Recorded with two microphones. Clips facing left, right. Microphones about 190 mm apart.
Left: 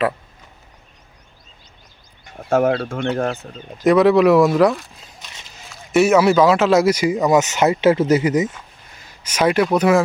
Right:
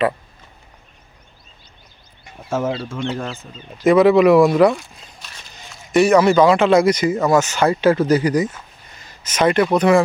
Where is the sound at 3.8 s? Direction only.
Centre (ahead or behind).